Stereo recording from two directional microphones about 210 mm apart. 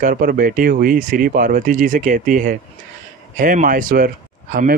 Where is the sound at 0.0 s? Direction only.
40° right (ahead or behind).